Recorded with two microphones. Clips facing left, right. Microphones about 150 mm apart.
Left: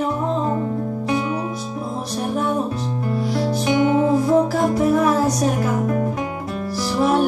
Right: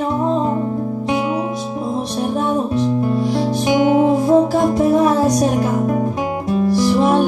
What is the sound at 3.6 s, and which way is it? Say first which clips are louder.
Music: right 4 dB; 20° right (ahead or behind).